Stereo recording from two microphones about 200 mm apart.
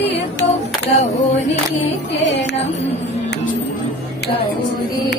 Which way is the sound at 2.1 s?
60° left (ahead or behind).